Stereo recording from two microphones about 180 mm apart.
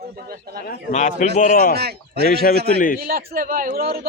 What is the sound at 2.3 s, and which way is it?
Speech, 55° left (ahead or behind).